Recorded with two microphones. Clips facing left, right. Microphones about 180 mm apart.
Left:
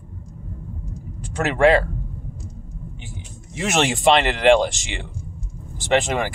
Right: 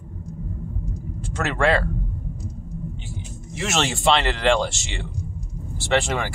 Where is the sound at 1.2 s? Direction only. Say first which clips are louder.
Left 5 dB; 15° left (ahead or behind).